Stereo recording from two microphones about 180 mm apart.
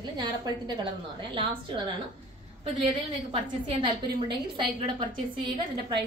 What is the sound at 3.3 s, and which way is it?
A woman's voice, 30° right (ahead or behind).